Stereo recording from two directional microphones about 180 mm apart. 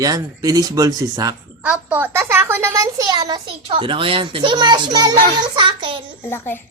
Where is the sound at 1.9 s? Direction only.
10° right (ahead or behind); by 6.0 s 25° right (ahead or behind).